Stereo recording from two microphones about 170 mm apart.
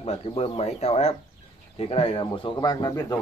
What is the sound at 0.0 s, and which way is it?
Speech, 35° left (ahead or behind).